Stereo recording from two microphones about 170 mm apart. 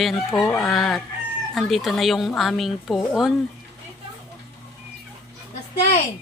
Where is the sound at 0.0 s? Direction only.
Centre (ahead or behind).